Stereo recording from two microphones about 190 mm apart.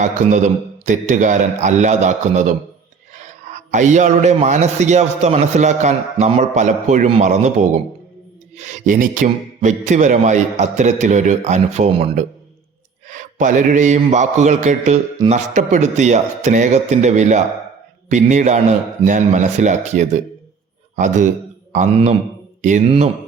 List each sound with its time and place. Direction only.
0.0 s a man's voice: 40° right (ahead or behind)
13.1 s mantra: 40° right (ahead or behind)
15.2 s a man's voice: 40° right (ahead or behind)